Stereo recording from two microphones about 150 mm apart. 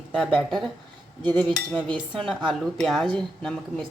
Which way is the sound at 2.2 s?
5° left (ahead or behind).